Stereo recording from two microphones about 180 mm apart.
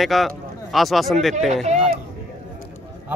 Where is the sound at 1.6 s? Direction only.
35° right (ahead or behind).